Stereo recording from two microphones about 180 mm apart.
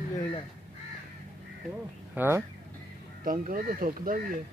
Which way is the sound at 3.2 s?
50° right (ahead or behind).